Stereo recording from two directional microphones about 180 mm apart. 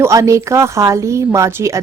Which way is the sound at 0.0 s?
15° right (ahead or behind).